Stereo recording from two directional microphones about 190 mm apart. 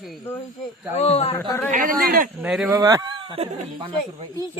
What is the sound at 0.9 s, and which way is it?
Speech, 30° left (ahead or behind).